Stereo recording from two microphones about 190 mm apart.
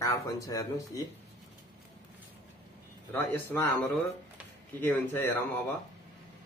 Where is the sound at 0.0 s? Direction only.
15° left (ahead or behind).